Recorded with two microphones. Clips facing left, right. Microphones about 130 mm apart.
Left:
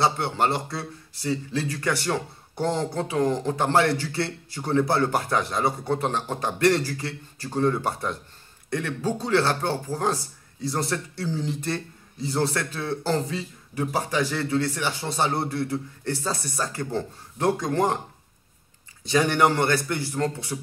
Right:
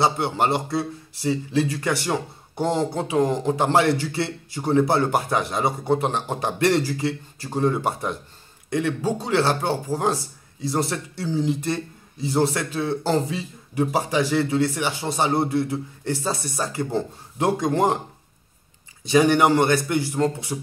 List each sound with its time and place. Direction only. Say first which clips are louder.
0.0 s a man's voice: right 2 dB; 15° right (ahead or behind)
19.0 s speech: right 4 dB; 10° right (ahead or behind)